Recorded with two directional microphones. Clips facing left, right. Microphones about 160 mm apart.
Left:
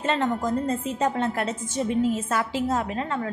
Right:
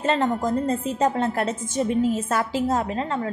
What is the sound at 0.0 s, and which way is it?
A woman's voice, 35° right (ahead or behind).